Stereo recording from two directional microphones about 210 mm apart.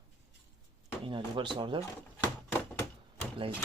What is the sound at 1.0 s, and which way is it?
Speech, 25° right (ahead or behind).